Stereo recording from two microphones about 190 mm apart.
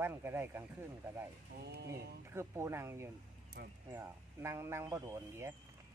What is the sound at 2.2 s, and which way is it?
Speech, 15° right (ahead or behind).